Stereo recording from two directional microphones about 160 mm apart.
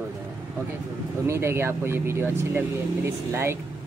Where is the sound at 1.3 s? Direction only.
15° right (ahead or behind).